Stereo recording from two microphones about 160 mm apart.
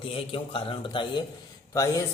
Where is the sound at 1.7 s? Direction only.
20° left (ahead or behind).